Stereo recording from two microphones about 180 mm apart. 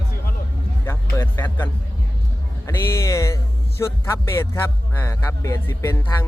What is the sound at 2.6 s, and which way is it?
Speech, 15° left (ahead or behind).